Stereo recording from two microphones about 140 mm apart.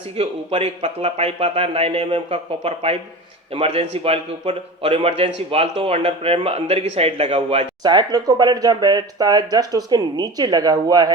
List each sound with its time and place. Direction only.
0.2 s a man's voice: 45° right (ahead or behind)
7.8 s speech: 30° right (ahead or behind)